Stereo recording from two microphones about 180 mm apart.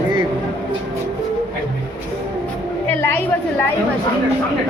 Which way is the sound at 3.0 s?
10° left (ahead or behind).